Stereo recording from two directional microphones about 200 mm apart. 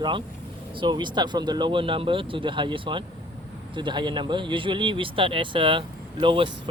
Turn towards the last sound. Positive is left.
turn(degrees=-25)  # may be behind; listen again after turning